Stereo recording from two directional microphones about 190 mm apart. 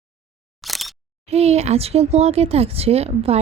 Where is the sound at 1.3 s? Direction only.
35° right (ahead or behind).